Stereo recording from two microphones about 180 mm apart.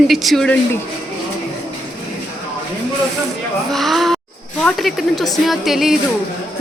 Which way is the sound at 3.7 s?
Centre (ahead or behind).